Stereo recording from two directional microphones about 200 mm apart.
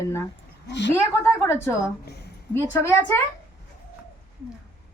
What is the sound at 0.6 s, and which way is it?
Speech, 60° left (ahead or behind).